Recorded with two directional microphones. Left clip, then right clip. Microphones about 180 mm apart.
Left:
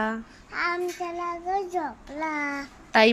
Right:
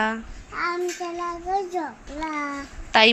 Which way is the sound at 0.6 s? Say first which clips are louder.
Right 1 dB; centre (ahead or behind).